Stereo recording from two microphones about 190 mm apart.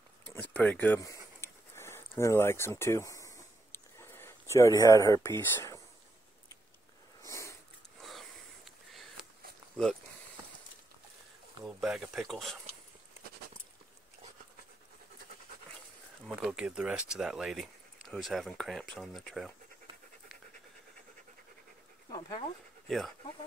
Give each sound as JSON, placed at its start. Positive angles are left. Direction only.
{"t": 0.3, "sound": "a sound", "side_deg": 10}
{"t": 7.2, "sound": "sniff", "side_deg": 15}
{"t": 8.0, "sound": "a sound", "side_deg": 0}
{"t": 9.8, "sound": "speech", "side_deg": 5}
{"t": 11.6, "sound": "speech", "side_deg": -5}
{"t": 16.3, "sound": "speech", "side_deg": -5}
{"t": 22.8, "sound": "speech", "side_deg": 0}